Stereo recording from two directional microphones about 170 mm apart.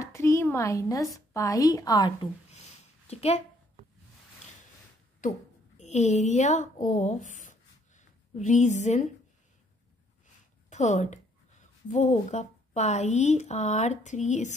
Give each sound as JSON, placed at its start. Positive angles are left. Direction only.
{"t": 0.0, "sound": "a sound", "side_deg": 15}
{"t": 1.1, "sound": "a woman's voice", "side_deg": 20}
{"t": 3.1, "sound": "a woman's voice", "side_deg": 35}
{"t": 5.2, "sound": "speech", "side_deg": 45}
{"t": 10.7, "sound": "speech", "side_deg": 45}